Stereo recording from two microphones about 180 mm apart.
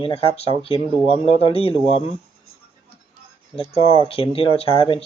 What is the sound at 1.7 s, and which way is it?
Speech, 35° right (ahead or behind).